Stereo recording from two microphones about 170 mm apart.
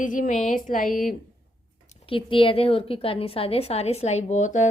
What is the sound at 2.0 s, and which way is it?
A woman's voice, 30° left (ahead or behind).